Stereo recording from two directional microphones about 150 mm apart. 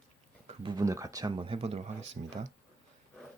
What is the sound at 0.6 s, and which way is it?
Speech, 25° right (ahead or behind).